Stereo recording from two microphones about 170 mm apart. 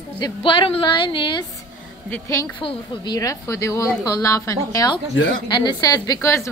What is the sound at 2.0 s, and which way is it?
Speech, 15° left (ahead or behind).